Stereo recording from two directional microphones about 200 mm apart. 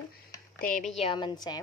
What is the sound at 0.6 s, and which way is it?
Speech, 40° left (ahead or behind).